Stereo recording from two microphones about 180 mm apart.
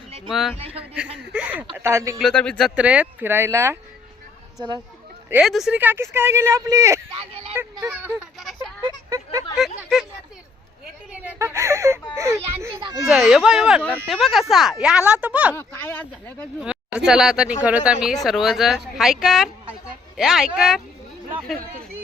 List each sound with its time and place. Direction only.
0.3 s speech: centre (ahead or behind)
0.5 s a man's voice: 35° right (ahead or behind)
1.3 s speech: 10° right (ahead or behind)
2.1 s speech: 5° left (ahead or behind); by 3.8 s 15° right (ahead or behind)
5.3 s speech: centre (ahead or behind)
7.2 s a sound: 35° right (ahead or behind)
7.5 s speech: 10° right (ahead or behind)
9.6 s speech: centre (ahead or behind)
11.2 s whimper: 10° right (ahead or behind)
12.1 s a child's voice: 15° right (ahead or behind)
13.1 s speech: centre (ahead or behind)
15.5 s speech: 10° left (ahead or behind)
16.6 s a sound: 5° right (ahead or behind)
17.1 s speech: 5° right (ahead or behind)